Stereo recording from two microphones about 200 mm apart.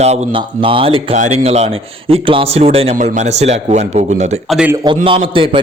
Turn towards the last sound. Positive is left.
turn(degrees=-25)  # may be behind; listen again after turning